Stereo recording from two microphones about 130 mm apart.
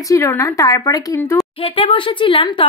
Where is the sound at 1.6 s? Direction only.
45° left (ahead or behind).